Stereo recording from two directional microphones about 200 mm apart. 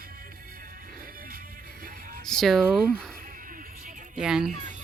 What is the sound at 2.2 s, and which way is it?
Speech, centre (ahead or behind).